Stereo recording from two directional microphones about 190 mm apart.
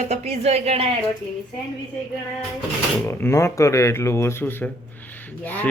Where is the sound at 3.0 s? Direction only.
15° left (ahead or behind).